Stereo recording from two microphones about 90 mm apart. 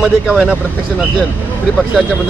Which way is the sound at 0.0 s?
10° right (ahead or behind).